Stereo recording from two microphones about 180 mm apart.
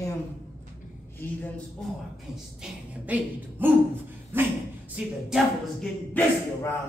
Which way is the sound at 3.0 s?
10° right (ahead or behind).